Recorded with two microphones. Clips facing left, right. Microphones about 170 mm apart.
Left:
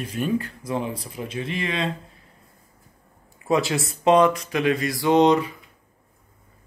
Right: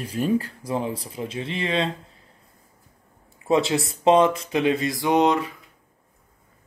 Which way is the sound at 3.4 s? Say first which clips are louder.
Right 1 dB; 25° right (ahead or behind).